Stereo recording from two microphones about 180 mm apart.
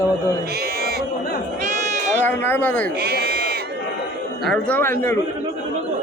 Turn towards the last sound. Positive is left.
turn(degrees=15)  # may be behind; listen again after turning